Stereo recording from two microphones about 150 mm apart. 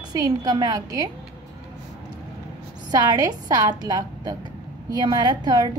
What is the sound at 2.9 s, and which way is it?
A woman's voice, 25° right (ahead or behind).